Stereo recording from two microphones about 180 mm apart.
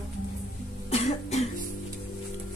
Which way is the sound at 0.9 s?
35° left (ahead or behind).